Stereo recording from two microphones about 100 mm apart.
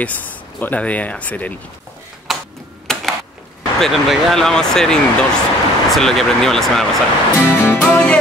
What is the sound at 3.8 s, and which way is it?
Speech, centre (ahead or behind).